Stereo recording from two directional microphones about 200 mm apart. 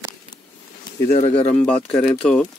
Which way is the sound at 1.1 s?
30° left (ahead or behind).